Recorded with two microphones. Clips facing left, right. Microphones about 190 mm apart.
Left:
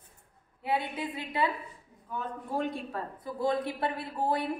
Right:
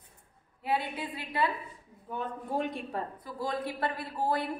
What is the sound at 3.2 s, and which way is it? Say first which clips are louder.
Speech: left 9 dB; 25° left (ahead or behind).